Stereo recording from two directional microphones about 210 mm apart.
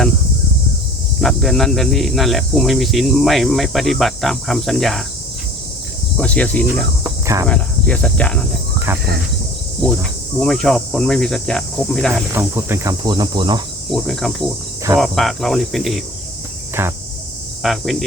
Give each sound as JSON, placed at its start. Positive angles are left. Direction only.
{"t": 1.2, "sound": "speech", "side_deg": 0}
{"t": 6.1, "sound": "speech", "side_deg": 5}
{"t": 7.0, "sound": "cricket", "side_deg": -15}
{"t": 7.4, "sound": "speech", "side_deg": 5}
{"t": 8.9, "sound": "speech", "side_deg": -10}
{"t": 10.4, "sound": "speech", "side_deg": 0}
{"t": 12.3, "sound": "speech", "side_deg": -10}
{"t": 13.9, "sound": "speech", "side_deg": 0}
{"t": 16.8, "sound": "speech", "side_deg": -10}
{"t": 17.6, "sound": "speech", "side_deg": 0}